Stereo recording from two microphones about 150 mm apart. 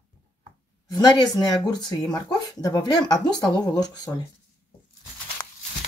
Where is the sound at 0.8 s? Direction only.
30° left (ahead or behind).